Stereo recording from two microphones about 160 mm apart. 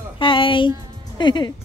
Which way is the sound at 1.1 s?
30° left (ahead or behind).